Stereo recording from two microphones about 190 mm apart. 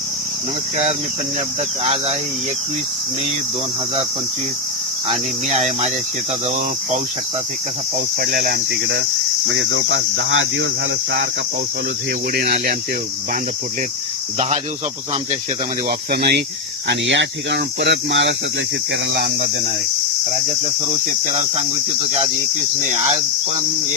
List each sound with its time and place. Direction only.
1.8 s speech: 30° right (ahead or behind)
5.1 s speech: 35° right (ahead or behind)
7.9 s cricket: 55° right (ahead or behind)
9.5 s speech: 80° right
12.3 s speech: 55° right (ahead or behind)
15.9 s cricket: 55° right (ahead or behind)
16.9 s speech: 70° right (ahead or behind)
19.1 s speech: 50° right (ahead or behind)